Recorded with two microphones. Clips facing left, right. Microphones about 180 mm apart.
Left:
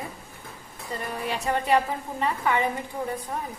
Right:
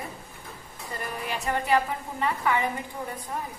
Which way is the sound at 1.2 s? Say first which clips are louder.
Left 2 dB; 20° left (ahead or behind).